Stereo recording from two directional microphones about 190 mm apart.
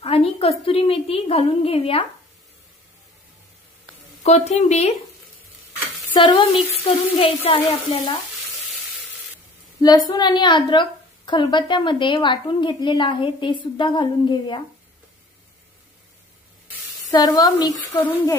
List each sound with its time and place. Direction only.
0.0 s a woman's voice: 30° left (ahead or behind)
4.2 s a woman's voice: 35° left (ahead or behind)
6.1 s a woman's voice: 25° left (ahead or behind)
9.8 s a woman's voice: 20° left (ahead or behind)
17.1 s a woman's voice: 20° left (ahead or behind)